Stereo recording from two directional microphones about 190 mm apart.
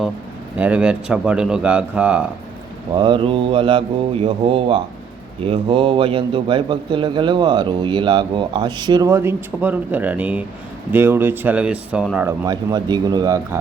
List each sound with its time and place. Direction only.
0.5 s speech: 5° right (ahead or behind)
2.9 s a man's voice: 25° right (ahead or behind); by 12.3 s 5° right (ahead or behind)
12.5 s a man's voice: 20° right (ahead or behind)